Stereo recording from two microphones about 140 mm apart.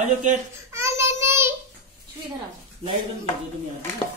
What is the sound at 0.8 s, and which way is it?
Child singing, 20° right (ahead or behind).